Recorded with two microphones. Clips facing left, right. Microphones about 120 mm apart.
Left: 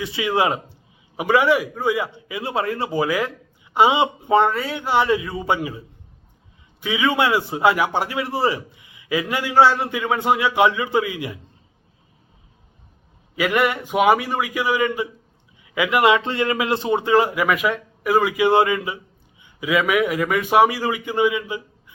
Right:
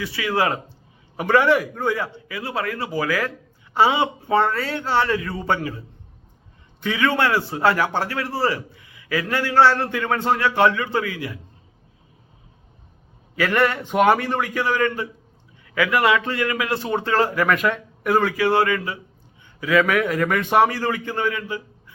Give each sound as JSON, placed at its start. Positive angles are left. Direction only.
{"t": 0.0, "sound": "a man's voice", "side_deg": 20}
{"t": 6.8, "sound": "a man's voice", "side_deg": 10}
{"t": 13.3, "sound": "a man's voice", "side_deg": 15}